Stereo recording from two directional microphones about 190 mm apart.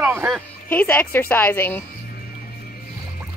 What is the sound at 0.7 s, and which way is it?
A woman's voice, 10° left (ahead or behind).